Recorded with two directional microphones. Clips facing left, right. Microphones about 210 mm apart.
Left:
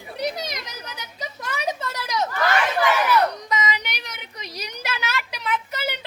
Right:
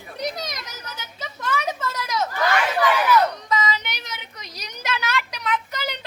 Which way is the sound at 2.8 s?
15° left (ahead or behind).